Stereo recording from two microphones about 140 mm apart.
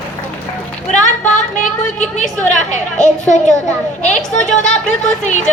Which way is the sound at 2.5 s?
60° left (ahead or behind).